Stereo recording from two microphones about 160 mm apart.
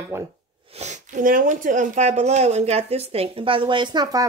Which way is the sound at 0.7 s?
50° right (ahead or behind).